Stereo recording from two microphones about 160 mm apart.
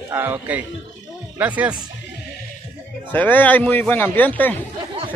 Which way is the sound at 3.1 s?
10° left (ahead or behind).